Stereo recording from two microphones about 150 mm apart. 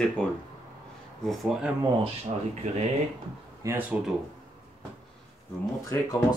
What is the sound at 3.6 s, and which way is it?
Speech, 15° right (ahead or behind).